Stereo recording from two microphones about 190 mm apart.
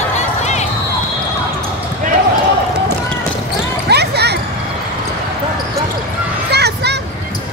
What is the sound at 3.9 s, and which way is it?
Basketball bounce, 60° right (ahead or behind).